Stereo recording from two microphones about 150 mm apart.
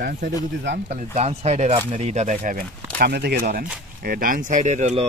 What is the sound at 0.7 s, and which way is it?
Speech, 45° right (ahead or behind).